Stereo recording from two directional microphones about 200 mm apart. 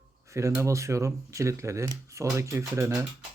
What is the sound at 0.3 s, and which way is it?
Speech, 15° right (ahead or behind).